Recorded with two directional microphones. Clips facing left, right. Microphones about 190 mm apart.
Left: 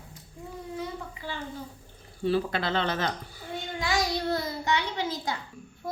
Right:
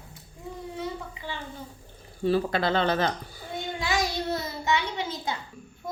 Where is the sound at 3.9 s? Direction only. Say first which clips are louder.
Left 1 dB; 20° right (ahead or behind).